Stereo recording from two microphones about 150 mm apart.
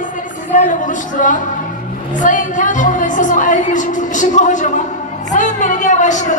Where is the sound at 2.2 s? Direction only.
60° left (ahead or behind).